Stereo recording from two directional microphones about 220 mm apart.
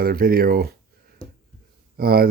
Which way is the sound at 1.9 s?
45° right (ahead or behind).